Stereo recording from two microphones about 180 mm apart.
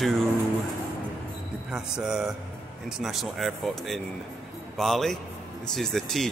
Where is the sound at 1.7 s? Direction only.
5° right (ahead or behind).